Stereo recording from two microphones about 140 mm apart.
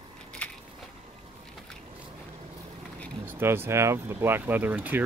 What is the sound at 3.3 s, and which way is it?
Speech, 15° right (ahead or behind).